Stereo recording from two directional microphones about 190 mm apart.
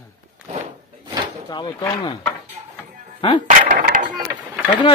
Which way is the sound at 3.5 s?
45° right (ahead or behind).